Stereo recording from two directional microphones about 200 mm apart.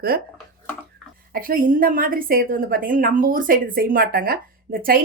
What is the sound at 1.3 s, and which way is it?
A woman's voice, 45° right (ahead or behind).